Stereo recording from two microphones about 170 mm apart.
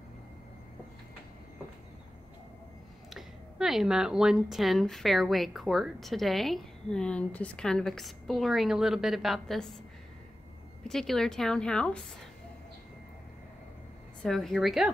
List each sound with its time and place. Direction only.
3.1 s speech: centre (ahead or behind)
10.8 s speech: centre (ahead or behind)
14.2 s speech: centre (ahead or behind)